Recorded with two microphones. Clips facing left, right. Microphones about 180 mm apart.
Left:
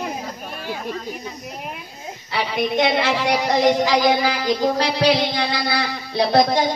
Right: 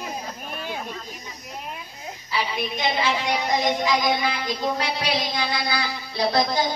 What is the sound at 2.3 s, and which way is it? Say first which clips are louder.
A woman's voice: left 6 dB; 70° left (ahead or behind).